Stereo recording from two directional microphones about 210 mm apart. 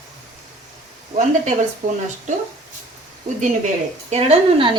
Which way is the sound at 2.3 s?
35° right (ahead or behind).